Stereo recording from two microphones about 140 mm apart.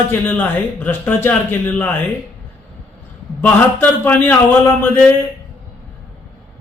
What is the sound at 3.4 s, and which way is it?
A man's voice, 10° left (ahead or behind).